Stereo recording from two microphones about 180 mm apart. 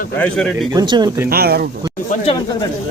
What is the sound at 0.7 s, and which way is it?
Speech, 25° right (ahead or behind).